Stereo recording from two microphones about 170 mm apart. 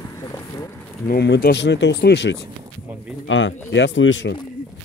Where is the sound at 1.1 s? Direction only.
70° left (ahead or behind); by 4.3 s 90° left.